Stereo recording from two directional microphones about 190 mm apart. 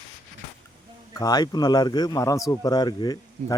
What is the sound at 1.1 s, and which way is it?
Speech, 20° left (ahead or behind).